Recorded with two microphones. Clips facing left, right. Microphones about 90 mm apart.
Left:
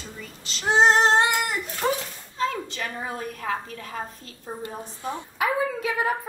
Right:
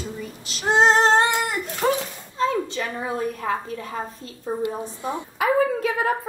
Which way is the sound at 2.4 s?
5° right (ahead or behind).